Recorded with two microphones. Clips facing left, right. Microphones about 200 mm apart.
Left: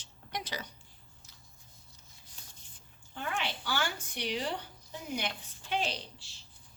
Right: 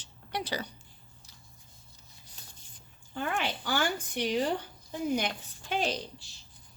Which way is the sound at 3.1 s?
55° right (ahead or behind).